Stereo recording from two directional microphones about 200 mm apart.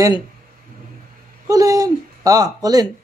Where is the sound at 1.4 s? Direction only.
15° right (ahead or behind).